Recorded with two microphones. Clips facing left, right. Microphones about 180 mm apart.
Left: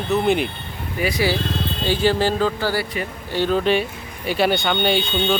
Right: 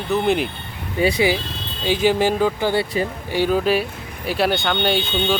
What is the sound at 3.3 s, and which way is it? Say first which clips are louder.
Speech: even; 10° right (ahead or behind).